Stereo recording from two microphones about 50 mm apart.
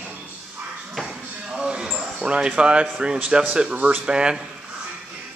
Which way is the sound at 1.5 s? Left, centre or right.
Centre.